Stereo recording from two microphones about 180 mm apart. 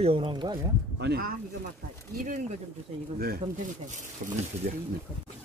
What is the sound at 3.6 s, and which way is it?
Speech, 45° right (ahead or behind).